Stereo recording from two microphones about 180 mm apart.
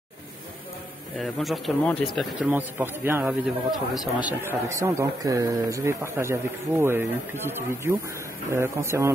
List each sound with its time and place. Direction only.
1.1 s speech: centre (ahead or behind)
2.5 s a man's voice: 10° right (ahead or behind)